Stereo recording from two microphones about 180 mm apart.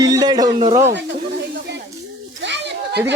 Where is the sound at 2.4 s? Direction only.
75° right (ahead or behind).